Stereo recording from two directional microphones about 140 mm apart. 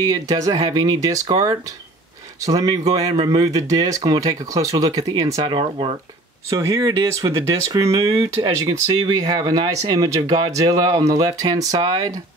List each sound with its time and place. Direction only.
0.0 s speech: 25° right (ahead or behind)
5.4 s speech: 35° right (ahead or behind)
6.5 s speech: 25° right (ahead or behind)